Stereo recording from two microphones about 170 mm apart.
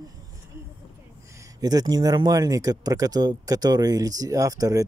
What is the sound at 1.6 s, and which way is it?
Speech, 20° right (ahead or behind).